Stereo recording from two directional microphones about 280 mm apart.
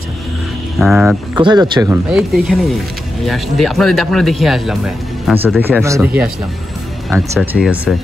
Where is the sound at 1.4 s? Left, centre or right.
Centre.